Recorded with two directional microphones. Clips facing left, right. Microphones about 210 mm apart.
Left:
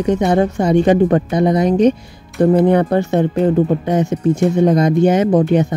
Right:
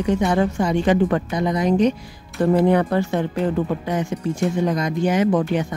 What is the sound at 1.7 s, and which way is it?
Speech, 20° left (ahead or behind).